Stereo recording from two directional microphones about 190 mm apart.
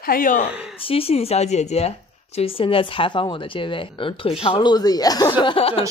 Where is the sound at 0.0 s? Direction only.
50° left (ahead or behind).